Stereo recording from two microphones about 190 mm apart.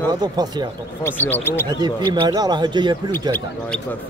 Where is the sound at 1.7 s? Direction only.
20° right (ahead or behind).